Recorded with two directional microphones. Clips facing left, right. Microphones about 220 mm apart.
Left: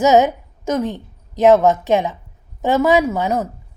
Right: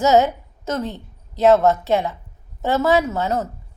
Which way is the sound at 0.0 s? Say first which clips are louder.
Left 2 dB; 15° left (ahead or behind).